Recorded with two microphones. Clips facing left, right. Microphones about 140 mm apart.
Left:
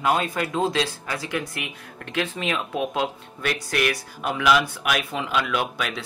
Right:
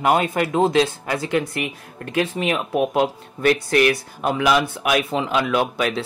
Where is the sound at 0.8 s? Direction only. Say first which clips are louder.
Right 6 dB; 25° right (ahead or behind).